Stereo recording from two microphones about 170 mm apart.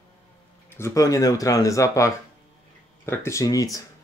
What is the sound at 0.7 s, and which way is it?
Speech, 15° left (ahead or behind).